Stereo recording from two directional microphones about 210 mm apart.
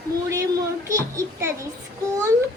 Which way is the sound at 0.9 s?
15° right (ahead or behind).